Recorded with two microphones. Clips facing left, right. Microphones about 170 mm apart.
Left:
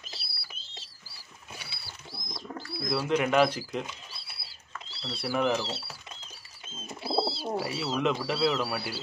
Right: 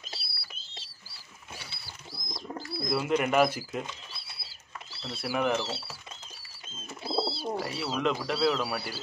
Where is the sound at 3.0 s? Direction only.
5° right (ahead or behind).